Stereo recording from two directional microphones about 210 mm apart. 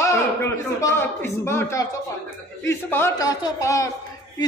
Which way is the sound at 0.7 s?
10° left (ahead or behind).